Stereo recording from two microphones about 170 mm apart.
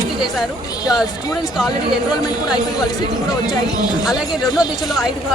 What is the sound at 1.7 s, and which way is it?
Speech, 25° left (ahead or behind).